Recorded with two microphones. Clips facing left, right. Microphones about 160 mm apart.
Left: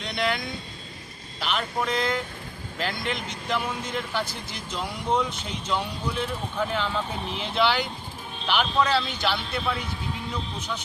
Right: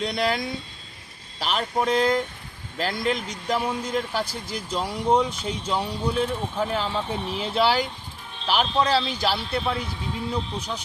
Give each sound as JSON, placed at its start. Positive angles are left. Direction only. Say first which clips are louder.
{"t": 0.0, "sound": "speech", "louder": "right 3 dB", "side_deg": -35}